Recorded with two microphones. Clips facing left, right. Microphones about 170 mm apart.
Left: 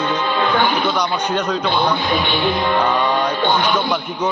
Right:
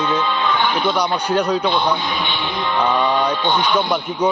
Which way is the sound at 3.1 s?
60° left (ahead or behind).